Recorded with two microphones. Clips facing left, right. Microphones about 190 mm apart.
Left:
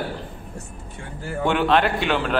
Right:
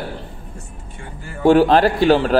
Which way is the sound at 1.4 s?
35° right (ahead or behind).